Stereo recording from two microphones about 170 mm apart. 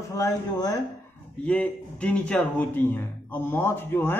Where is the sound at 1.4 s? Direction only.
5° left (ahead or behind).